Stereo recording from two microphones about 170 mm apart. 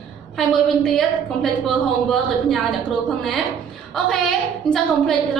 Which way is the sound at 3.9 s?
Centre (ahead or behind).